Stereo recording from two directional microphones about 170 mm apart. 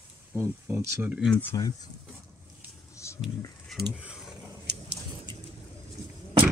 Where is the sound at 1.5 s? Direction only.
20° left (ahead or behind).